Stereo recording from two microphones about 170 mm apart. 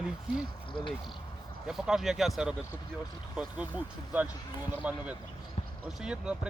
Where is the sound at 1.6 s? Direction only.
5° right (ahead or behind).